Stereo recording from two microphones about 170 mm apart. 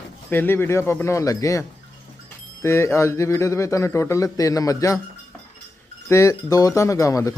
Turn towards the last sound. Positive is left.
turn(degrees=20)  # may be behind; listen again after turning